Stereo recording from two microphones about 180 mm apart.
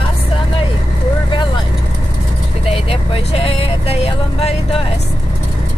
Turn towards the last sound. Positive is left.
turn(degrees=35)  # may be behind; listen again after turning